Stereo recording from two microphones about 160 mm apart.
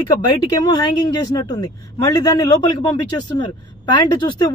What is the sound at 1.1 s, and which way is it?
Speech, 25° left (ahead or behind).